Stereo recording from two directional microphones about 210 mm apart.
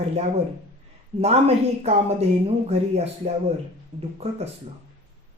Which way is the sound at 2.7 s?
30° right (ahead or behind).